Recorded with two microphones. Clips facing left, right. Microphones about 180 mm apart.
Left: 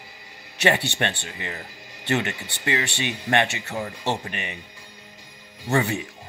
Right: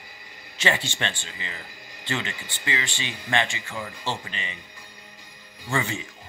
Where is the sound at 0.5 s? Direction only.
65° left (ahead or behind).